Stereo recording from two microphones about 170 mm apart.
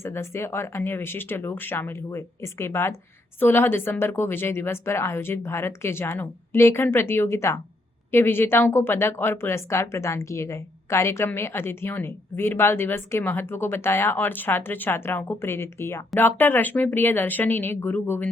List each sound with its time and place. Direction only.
0.0 s a woman's voice: 15° left (ahead or behind)